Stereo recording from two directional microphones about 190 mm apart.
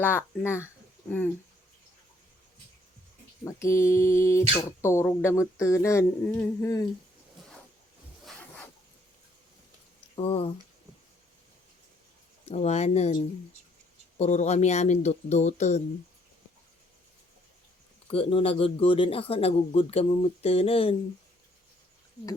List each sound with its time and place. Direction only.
0.0 s speech: 10° left (ahead or behind)
3.4 s speech: 15° left (ahead or behind)
8.2 s zipper: 10° left (ahead or behind)
10.2 s speech: 30° left (ahead or behind)
12.5 s speech: 35° left (ahead or behind)
14.2 s speech: 35° left (ahead or behind)
18.1 s speech: 30° left (ahead or behind)